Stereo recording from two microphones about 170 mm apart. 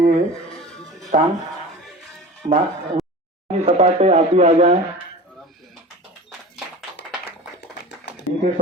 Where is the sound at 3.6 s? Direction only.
40° right (ahead or behind).